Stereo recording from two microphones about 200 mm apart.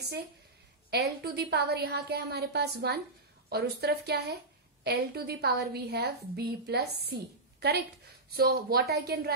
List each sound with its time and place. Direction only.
0.8 s a woman's voice: 55° right (ahead or behind)
8.4 s a woman's voice: 50° right (ahead or behind)